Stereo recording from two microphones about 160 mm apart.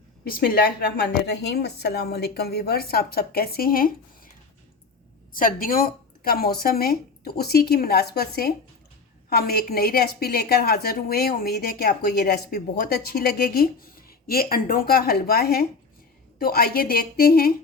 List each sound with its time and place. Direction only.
0.3 s a woman's voice: 65° left (ahead or behind)
5.3 s a woman's voice: 60° left (ahead or behind)